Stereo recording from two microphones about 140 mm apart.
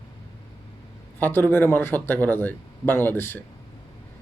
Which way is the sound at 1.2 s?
15° left (ahead or behind).